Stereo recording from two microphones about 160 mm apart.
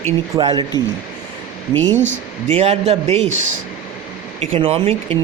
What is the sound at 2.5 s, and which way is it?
Speech, 40° right (ahead or behind).